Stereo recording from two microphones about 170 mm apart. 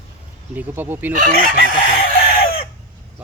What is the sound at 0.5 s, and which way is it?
Speech, 10° right (ahead or behind).